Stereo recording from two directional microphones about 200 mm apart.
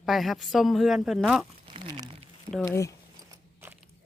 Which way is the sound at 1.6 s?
25° right (ahead or behind).